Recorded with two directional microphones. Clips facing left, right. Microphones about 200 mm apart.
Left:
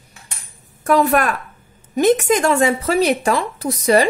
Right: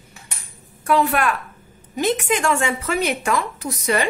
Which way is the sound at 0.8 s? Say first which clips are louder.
Left 3 dB; 40° left (ahead or behind).